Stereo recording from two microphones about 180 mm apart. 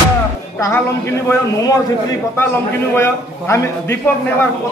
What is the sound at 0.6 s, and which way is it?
Speech, 15° left (ahead or behind).